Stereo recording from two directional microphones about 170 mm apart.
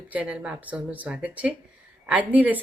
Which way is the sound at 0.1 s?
10° right (ahead or behind).